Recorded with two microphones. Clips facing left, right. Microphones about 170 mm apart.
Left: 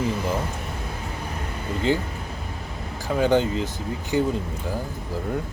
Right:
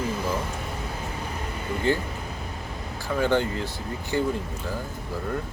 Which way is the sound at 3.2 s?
20° left (ahead or behind).